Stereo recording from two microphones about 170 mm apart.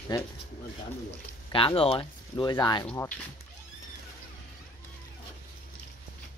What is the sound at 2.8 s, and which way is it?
Speech, 15° left (ahead or behind).